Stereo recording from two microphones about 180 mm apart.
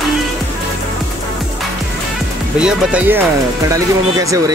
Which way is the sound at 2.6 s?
5° right (ahead or behind).